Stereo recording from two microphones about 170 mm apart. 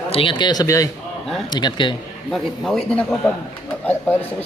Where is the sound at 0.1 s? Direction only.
30° left (ahead or behind).